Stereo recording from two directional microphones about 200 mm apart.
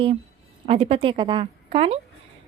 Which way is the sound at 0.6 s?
30° right (ahead or behind).